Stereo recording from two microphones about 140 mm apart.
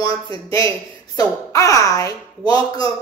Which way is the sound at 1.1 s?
25° left (ahead or behind).